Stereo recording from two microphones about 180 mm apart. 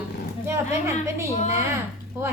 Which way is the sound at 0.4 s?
15° right (ahead or behind).